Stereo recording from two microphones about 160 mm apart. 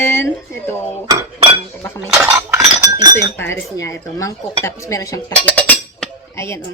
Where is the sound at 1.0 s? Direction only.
30° right (ahead or behind).